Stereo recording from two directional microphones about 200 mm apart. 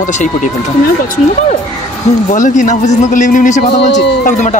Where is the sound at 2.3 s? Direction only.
40° left (ahead or behind).